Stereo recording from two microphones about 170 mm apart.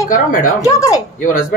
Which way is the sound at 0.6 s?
20° left (ahead or behind).